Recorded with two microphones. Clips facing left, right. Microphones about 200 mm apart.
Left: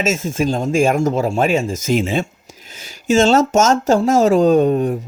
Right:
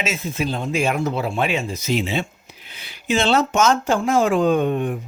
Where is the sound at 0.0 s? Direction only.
45° left (ahead or behind).